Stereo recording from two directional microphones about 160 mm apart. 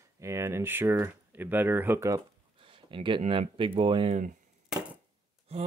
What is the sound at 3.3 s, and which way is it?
Speech, 35° right (ahead or behind).